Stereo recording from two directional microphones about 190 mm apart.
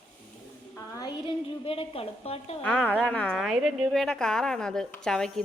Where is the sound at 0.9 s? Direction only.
25° left (ahead or behind).